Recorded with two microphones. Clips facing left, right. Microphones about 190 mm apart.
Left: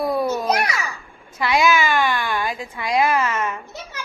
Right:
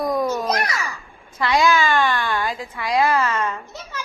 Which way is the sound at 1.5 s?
15° left (ahead or behind).